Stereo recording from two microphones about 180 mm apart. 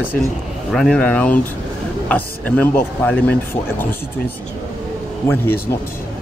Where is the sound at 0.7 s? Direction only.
5° left (ahead or behind).